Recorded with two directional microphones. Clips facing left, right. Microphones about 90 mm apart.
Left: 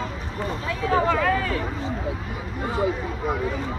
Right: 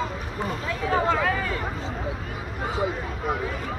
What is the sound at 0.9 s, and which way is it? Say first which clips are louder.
Speech: left 2 dB; 10° right (ahead or behind).